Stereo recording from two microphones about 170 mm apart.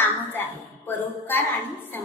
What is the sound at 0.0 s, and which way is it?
A woman's voice, 10° left (ahead or behind).